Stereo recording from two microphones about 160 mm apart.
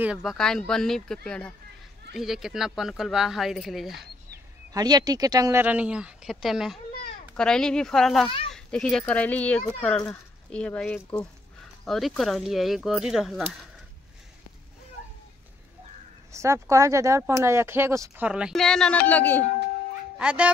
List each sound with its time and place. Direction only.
0.0 s speech: 5° right (ahead or behind)
4.7 s speech: 25° right (ahead or behind); by 13.6 s centre (ahead or behind)
16.3 s speech: 20° right (ahead or behind)
18.2 s speech: 5° right (ahead or behind); by 19.4 s 10° left (ahead or behind)
20.2 s speech: 5° right (ahead or behind)